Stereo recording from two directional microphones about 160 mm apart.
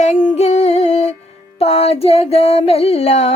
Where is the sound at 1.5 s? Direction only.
40° left (ahead or behind).